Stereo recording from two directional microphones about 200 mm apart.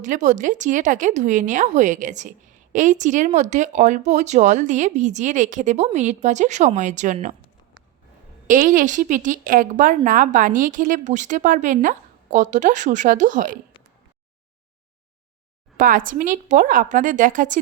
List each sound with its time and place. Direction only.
0.0 s speech: 40° right (ahead or behind)
8.4 s speech: 40° right (ahead or behind)
15.8 s speech: 45° right (ahead or behind)